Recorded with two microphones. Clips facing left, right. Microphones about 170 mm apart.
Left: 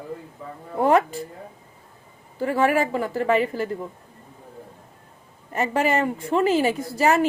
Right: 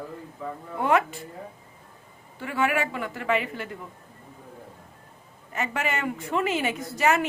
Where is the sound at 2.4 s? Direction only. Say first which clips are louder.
Left 6 dB; 35° left (ahead or behind).